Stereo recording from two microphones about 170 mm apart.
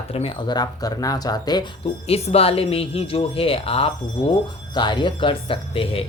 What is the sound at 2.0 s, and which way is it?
Speech, 35° left (ahead or behind).